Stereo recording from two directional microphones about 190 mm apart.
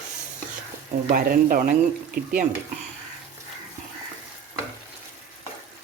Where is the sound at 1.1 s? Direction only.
45° right (ahead or behind).